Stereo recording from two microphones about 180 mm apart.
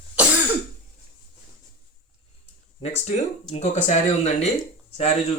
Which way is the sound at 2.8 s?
35° left (ahead or behind).